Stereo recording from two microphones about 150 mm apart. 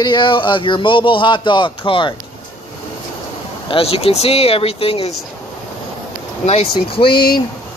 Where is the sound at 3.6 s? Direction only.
40° left (ahead or behind).